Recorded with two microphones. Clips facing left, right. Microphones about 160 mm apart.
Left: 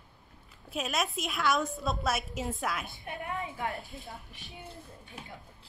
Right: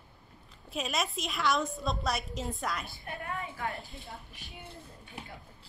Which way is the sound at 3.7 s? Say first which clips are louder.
Left 1 dB; centre (ahead or behind).